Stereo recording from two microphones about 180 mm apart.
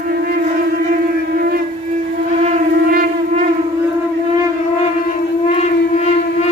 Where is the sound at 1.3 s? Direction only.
55° right (ahead or behind).